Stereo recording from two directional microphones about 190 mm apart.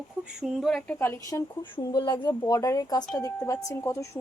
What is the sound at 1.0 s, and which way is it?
Speech, 10° left (ahead or behind).